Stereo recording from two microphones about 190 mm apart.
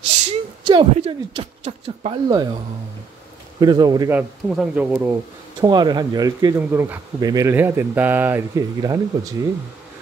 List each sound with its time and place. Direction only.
0.3 s a woman's voice: 30° right (ahead or behind)
3.5 s a man's voice: 20° right (ahead or behind)
4.1 s speech: 5° right (ahead or behind)
5.6 s speech: 20° right (ahead or behind)